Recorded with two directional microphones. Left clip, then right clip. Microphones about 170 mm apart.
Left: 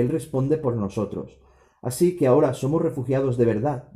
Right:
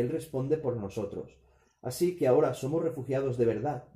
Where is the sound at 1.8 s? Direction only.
15° left (ahead or behind).